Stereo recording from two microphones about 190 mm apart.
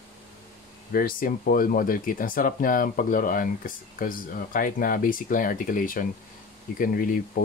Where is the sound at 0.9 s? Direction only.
50° left (ahead or behind).